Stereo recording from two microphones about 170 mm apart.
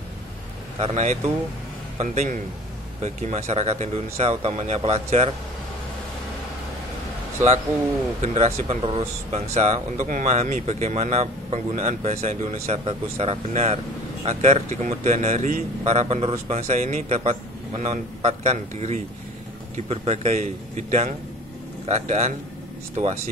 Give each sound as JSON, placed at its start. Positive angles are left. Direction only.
{"t": 0.7, "sound": "a man's voice", "side_deg": -40}
{"t": 8.2, "sound": "a man's voice", "side_deg": -40}